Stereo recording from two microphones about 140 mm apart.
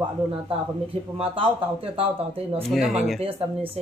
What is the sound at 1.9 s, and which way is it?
Speech, 45° right (ahead or behind).